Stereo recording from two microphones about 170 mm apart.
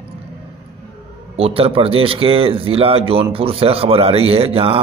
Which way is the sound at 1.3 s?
35° right (ahead or behind).